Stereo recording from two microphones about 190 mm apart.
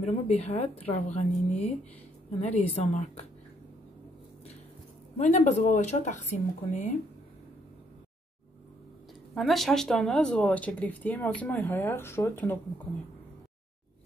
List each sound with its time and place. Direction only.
0.0 s speech: 35° left (ahead or behind)
5.2 s speech: 40° left (ahead or behind)
9.3 s speech: centre (ahead or behind)